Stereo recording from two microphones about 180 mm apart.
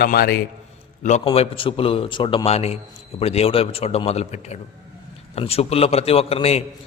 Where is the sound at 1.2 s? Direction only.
30° left (ahead or behind).